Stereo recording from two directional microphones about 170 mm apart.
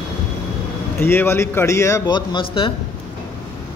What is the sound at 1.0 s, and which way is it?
Speech, 15° left (ahead or behind).